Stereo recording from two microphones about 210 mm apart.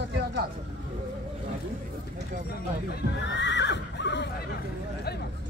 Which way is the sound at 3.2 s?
55° left (ahead or behind).